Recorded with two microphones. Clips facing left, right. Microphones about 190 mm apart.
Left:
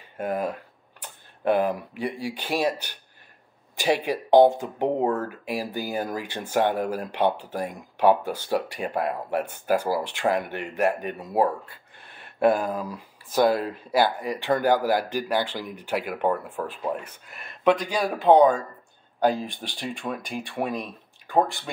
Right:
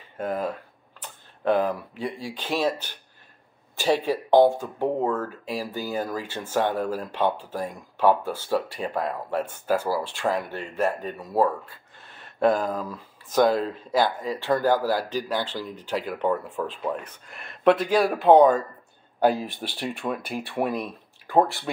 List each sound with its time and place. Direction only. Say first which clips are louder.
0.2 s speech: left 1 dB; 10° left (ahead or behind)